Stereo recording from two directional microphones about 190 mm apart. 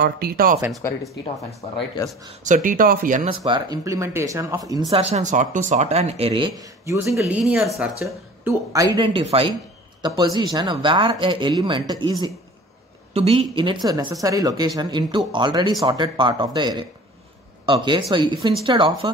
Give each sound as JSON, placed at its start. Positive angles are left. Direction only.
{"t": 0.0, "sound": "speech", "side_deg": -50}
{"t": 2.4, "sound": "speech", "side_deg": -45}
{"t": 3.4, "sound": "speech", "side_deg": -20}
{"t": 5.0, "sound": "speech", "side_deg": -35}
{"t": 6.6, "sound": "speech", "side_deg": -15}
{"t": 8.0, "sound": "speech", "side_deg": -15}